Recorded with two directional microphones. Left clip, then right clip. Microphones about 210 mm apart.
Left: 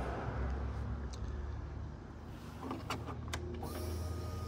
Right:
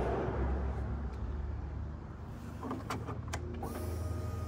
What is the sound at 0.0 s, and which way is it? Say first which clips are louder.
Vehicle: right 7 dB; 45° right (ahead or behind).